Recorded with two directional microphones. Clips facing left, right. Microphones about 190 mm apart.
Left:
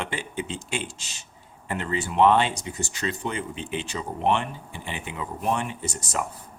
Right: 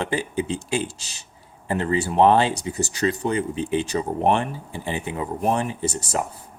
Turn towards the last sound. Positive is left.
turn(degrees=-35)  # may be behind; listen again after turning